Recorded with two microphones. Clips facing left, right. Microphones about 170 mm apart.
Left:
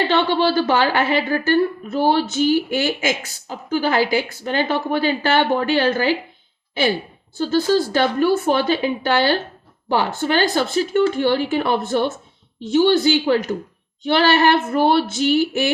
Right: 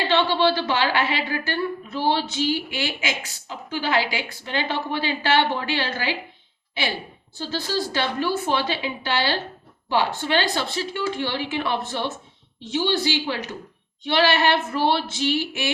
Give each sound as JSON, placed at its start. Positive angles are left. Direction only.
{"t": 0.2, "sound": "a woman's voice", "side_deg": 45}
{"t": 7.3, "sound": "a woman's voice", "side_deg": 50}